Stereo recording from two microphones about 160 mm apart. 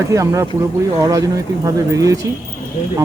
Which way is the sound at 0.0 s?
20° right (ahead or behind).